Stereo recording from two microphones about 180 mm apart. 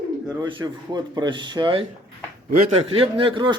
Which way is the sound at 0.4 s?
25° right (ahead or behind).